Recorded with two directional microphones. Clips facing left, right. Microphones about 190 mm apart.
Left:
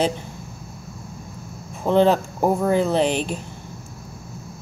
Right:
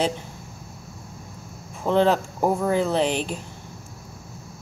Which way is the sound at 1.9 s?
15° left (ahead or behind).